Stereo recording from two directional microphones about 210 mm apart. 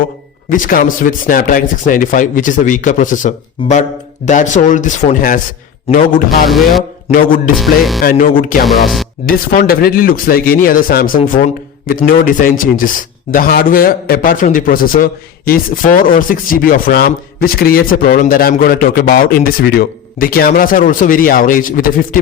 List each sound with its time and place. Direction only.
0.5 s speech: 40° left (ahead or behind)
6.5 s speech: centre (ahead or behind)
7.1 s speech: 40° left (ahead or behind)
7.6 s speech: centre (ahead or behind)
8.0 s speech: 40° left (ahead or behind)
8.6 s speech: centre (ahead or behind)
9.2 s a man's voice: 45° left (ahead or behind)